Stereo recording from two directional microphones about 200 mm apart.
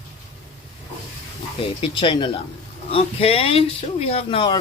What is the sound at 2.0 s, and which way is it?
Speech, 25° left (ahead or behind).